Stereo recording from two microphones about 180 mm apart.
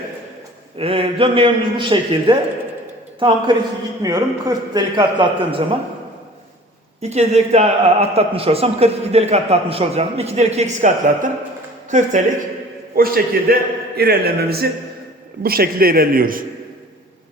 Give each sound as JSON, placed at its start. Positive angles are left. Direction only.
{"t": 0.8, "sound": "a man's voice", "side_deg": -30}
{"t": 7.0, "sound": "a man's voice", "side_deg": -35}
{"t": 13.0, "sound": "a man's voice", "side_deg": -55}